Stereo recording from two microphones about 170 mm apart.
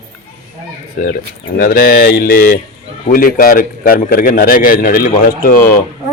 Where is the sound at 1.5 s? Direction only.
60° left (ahead or behind).